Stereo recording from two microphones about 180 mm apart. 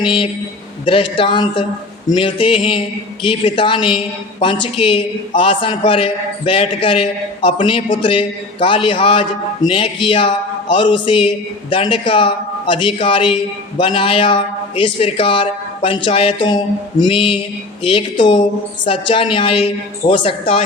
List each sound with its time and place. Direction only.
0.0 s a woman's voice: 30° left (ahead or behind)